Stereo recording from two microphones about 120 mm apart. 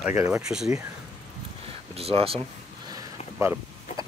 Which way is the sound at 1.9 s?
55° right (ahead or behind).